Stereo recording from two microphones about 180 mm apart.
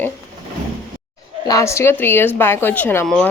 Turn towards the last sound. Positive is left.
turn(degrees=5)  # may be behind; listen again after turning